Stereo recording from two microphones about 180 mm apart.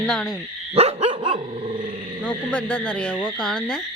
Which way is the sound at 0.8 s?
35° right (ahead or behind).